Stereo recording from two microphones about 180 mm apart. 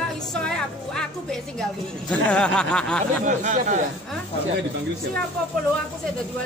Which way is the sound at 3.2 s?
45° right (ahead or behind).